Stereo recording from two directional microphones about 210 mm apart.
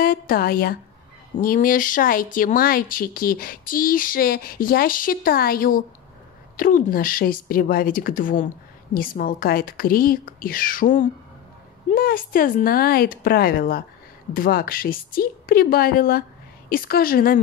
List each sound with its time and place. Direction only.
0.0 s a woman's voice: 45° left (ahead or behind)